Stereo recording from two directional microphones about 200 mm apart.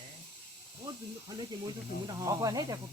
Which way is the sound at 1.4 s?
25° right (ahead or behind).